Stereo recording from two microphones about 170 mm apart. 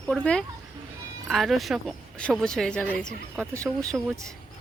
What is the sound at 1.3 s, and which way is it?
Speech, centre (ahead or behind).